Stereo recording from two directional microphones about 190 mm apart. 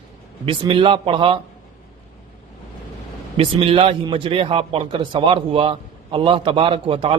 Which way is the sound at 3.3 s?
30° right (ahead or behind).